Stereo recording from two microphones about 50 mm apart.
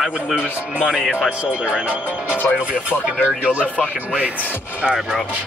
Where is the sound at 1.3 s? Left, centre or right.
Right.